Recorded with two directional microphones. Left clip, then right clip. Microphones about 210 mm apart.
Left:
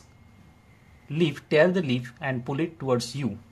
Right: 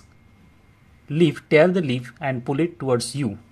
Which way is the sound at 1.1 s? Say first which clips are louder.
Right 6 dB; 15° right (ahead or behind).